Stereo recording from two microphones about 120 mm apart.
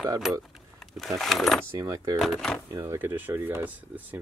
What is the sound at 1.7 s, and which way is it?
Speech, 30° right (ahead or behind).